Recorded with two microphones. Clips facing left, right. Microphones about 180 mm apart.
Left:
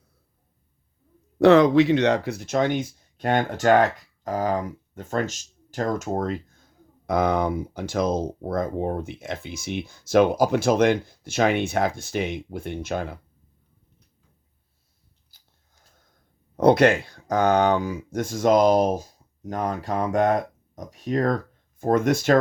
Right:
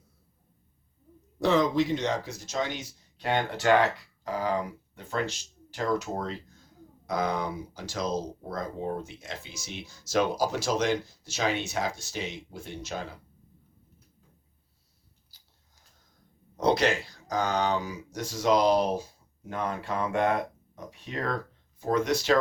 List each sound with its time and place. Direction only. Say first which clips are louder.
1.4 s speech: left 9 dB; 65° left (ahead or behind)
15.3 s a sound: left 1 dB; 50° left (ahead or behind)
16.6 s speech: left 8 dB; 55° left (ahead or behind)